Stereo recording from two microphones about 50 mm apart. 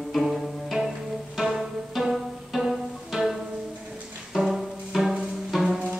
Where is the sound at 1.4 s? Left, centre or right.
Centre.